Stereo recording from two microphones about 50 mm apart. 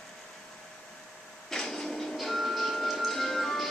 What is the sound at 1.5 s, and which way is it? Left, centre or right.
Music, centre.